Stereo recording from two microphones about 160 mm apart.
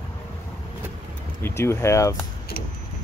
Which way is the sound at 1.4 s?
15° left (ahead or behind).